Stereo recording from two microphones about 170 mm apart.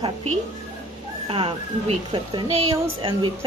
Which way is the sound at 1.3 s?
35° right (ahead or behind).